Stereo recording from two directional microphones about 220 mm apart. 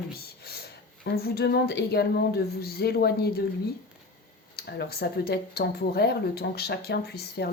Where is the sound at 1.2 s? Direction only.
45° left (ahead or behind).